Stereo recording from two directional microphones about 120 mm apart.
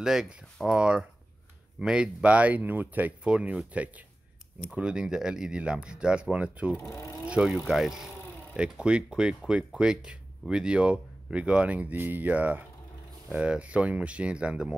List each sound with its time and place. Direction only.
0.0 s speech: 5° right (ahead or behind)
6.9 s speech: 25° left (ahead or behind)
7.2 s speech: 10° right (ahead or behind)